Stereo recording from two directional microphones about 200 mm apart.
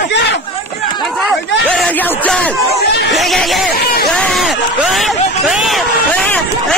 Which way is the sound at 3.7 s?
50° left (ahead or behind).